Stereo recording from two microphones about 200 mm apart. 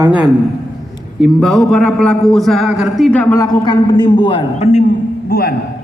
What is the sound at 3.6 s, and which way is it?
A woman's voice, 20° left (ahead or behind).